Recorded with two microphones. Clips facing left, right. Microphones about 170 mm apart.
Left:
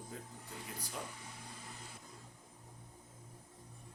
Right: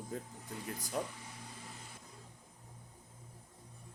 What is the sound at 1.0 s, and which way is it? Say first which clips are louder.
Speech: right 8 dB; 50° right (ahead or behind).